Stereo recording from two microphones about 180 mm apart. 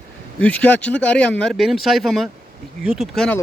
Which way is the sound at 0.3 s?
10° left (ahead or behind).